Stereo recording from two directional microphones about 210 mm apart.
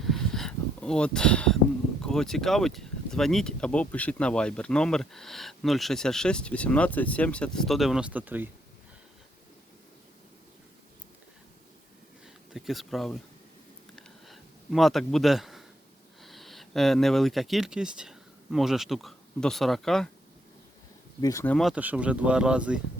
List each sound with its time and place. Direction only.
0.0 s a sound: centre (ahead or behind)
2.0 s speech: centre (ahead or behind)
12.5 s speech: centre (ahead or behind)
13.9 s a sound: centre (ahead or behind)
16.2 s speech: centre (ahead or behind)
21.2 s speech: 15° left (ahead or behind)
21.5 s speech: centre (ahead or behind)